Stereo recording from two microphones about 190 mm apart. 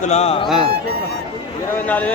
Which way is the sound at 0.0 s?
35° left (ahead or behind).